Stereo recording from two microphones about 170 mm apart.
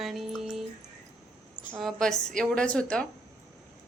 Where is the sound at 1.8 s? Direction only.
Centre (ahead or behind).